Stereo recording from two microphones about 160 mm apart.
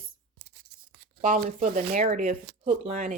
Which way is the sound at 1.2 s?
55° right (ahead or behind).